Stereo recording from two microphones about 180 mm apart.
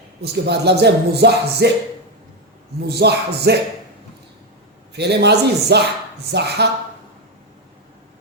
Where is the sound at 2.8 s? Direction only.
65° right (ahead or behind).